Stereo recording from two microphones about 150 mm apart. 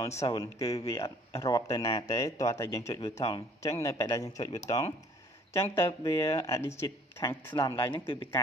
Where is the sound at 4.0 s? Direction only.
20° left (ahead or behind).